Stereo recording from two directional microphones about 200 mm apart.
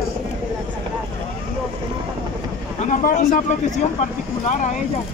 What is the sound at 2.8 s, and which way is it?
Speech, 40° left (ahead or behind).